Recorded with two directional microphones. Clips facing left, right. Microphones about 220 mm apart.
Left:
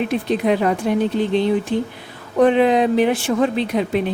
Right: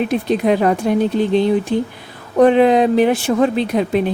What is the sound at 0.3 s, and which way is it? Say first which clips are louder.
Speech: right 3 dB; 45° right (ahead or behind).